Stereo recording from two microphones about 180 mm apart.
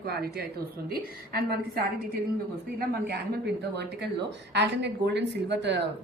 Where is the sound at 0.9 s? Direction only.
55° right (ahead or behind).